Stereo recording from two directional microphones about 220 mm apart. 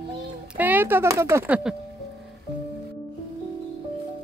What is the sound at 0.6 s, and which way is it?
Speech, 10° right (ahead or behind).